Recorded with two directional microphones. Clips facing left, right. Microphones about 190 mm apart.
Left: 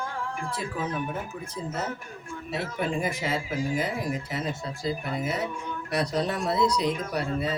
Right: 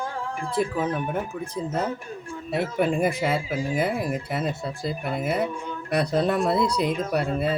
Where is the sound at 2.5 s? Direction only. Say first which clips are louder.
Right 6 dB; 55° right (ahead or behind).